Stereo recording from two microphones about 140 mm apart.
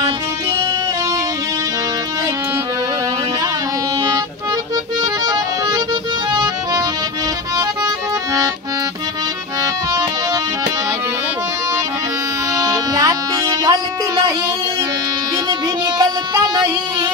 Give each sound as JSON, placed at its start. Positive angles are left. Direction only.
{"t": 5.2, "sound": "accordion", "side_deg": -30}
{"t": 9.6, "sound": "music", "side_deg": -25}
{"t": 12.5, "sound": "music", "side_deg": -25}
{"t": 16.0, "sound": "music", "side_deg": -30}